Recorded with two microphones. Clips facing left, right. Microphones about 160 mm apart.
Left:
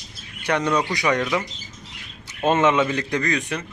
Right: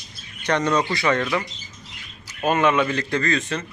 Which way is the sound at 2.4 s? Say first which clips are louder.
Left 1 dB; 20° left (ahead or behind).